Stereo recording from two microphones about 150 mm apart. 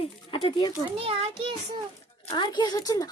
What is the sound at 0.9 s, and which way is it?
Speech, 40° right (ahead or behind).